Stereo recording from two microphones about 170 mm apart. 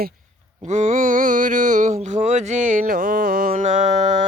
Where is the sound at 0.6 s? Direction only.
45° right (ahead or behind).